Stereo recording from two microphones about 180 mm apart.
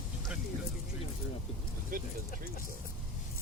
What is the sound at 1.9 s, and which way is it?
Speech, 50° right (ahead or behind).